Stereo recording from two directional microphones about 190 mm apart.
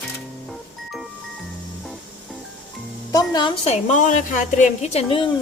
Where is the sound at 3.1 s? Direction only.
20° left (ahead or behind).